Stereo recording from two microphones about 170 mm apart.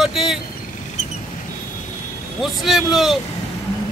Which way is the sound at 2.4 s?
Centre (ahead or behind).